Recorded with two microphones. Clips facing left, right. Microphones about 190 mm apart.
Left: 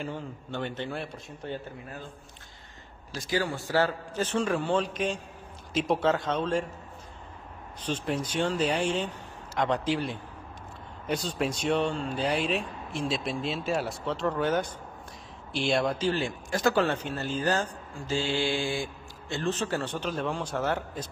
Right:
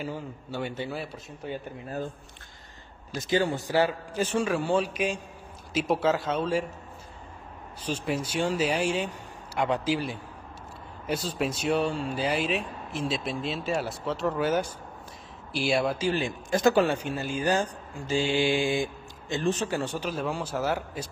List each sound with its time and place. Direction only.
0.0 s speech: 10° right (ahead or behind)
3.2 s speech: 25° right (ahead or behind); by 6.6 s 5° right (ahead or behind)
7.8 s speech: 10° right (ahead or behind)